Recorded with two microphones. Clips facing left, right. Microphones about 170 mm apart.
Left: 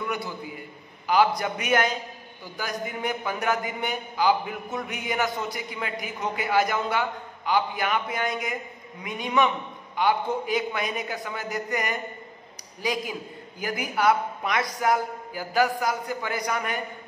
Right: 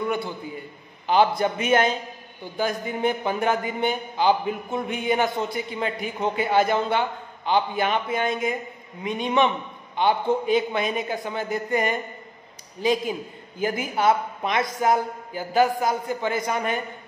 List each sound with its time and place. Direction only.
1.0 s a man's voice: 25° right (ahead or behind)